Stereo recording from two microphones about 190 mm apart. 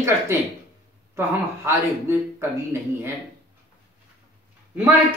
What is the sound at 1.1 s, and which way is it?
Speech, 15° right (ahead or behind).